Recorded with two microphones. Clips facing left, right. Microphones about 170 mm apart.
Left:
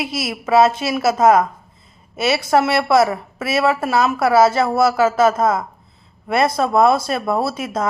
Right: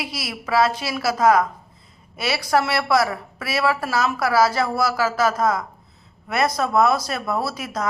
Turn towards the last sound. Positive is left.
turn(degrees=25)  # may be behind; listen again after turning